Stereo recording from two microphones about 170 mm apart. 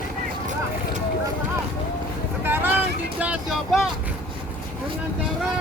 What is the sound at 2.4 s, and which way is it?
Vehicle, 10° right (ahead or behind).